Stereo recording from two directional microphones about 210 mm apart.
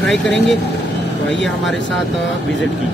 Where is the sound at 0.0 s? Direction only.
Centre (ahead or behind).